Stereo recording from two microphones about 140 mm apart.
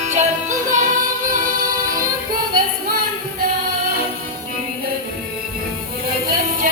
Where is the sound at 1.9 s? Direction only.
90° right.